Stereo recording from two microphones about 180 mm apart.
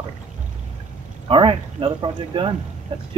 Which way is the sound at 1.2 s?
30° right (ahead or behind).